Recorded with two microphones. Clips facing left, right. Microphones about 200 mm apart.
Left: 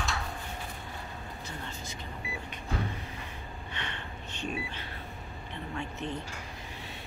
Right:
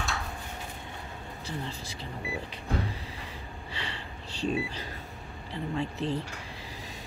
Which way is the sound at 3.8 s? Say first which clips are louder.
Right 1 dB; 30° right (ahead or behind).